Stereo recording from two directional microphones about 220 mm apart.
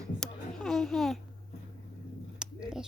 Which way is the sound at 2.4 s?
5° right (ahead or behind).